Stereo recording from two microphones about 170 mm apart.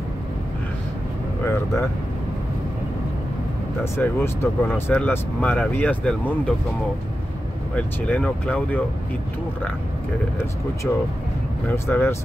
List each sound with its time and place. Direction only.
1.4 s speech: 15° left (ahead or behind)
3.8 s speech: 15° left (ahead or behind)
7.7 s speech: 5° left (ahead or behind)
11.7 s speech: 15° left (ahead or behind)